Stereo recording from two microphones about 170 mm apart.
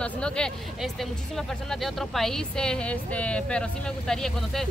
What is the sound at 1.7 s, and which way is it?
Speech, centre (ahead or behind).